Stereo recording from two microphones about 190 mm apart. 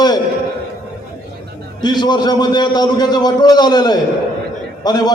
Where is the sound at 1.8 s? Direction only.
20° left (ahead or behind).